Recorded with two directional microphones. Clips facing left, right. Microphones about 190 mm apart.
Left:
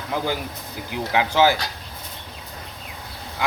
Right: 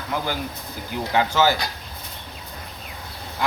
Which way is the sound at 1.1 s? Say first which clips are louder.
Left 1 dB; 10° left (ahead or behind).